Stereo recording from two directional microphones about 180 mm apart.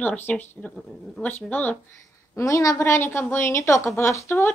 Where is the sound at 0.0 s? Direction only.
10° left (ahead or behind).